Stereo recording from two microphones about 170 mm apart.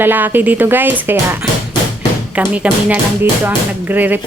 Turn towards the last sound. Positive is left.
turn(degrees=-10)  # may be behind; listen again after turning